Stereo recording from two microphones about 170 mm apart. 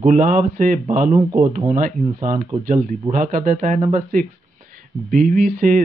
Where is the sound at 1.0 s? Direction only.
15° right (ahead or behind).